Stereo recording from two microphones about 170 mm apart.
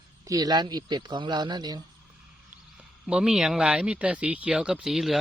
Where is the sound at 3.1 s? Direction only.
5° right (ahead or behind).